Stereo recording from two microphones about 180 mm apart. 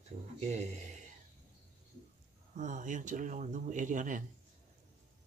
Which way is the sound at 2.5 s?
45° right (ahead or behind).